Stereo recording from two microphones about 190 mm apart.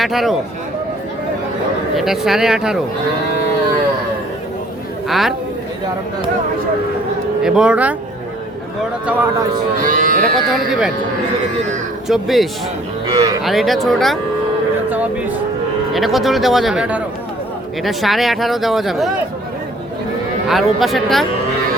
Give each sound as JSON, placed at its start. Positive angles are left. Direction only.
{"t": 0.0, "sound": "speech", "side_deg": 0}
{"t": 2.0, "sound": "speech", "side_deg": 0}
{"t": 5.0, "sound": "a woman's voice", "side_deg": 0}
{"t": 7.4, "sound": "speech", "side_deg": -5}
{"t": 9.8, "sound": "speech", "side_deg": -45}
{"t": 10.3, "sound": "speech", "side_deg": -5}
{"t": 12.0, "sound": "speech", "side_deg": 0}
{"t": 13.1, "sound": "speech", "side_deg": -20}
{"t": 13.4, "sound": "speech", "side_deg": 0}
{"t": 14.8, "sound": "cattle", "side_deg": -10}
{"t": 15.9, "sound": "speech", "side_deg": 0}
{"t": 20.5, "sound": "speech", "side_deg": 0}